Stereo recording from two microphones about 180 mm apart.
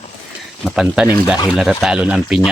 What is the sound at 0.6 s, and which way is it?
Speech, 5° right (ahead or behind).